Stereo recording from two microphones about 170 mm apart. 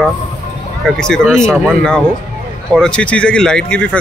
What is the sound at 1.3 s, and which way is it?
Speech, 5° left (ahead or behind).